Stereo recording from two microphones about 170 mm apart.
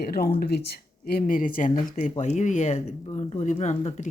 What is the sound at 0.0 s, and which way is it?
Speech, 65° left (ahead or behind).